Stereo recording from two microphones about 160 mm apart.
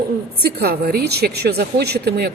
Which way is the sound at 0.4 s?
70° right (ahead or behind).